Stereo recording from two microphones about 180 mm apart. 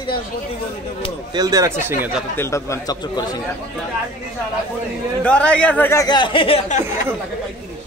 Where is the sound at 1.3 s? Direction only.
20° right (ahead or behind).